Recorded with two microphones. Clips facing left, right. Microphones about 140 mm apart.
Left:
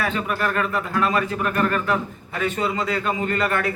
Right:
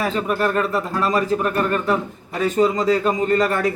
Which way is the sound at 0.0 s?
35° right (ahead or behind).